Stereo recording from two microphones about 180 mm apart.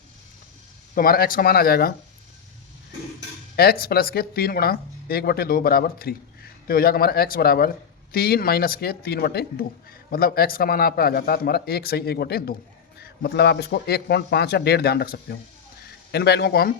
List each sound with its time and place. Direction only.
0.9 s a woman's voice: 55° left (ahead or behind)
3.5 s a woman's voice: 60° left (ahead or behind)